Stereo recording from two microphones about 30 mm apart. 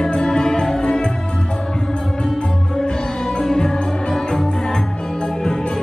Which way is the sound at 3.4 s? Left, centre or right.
Centre.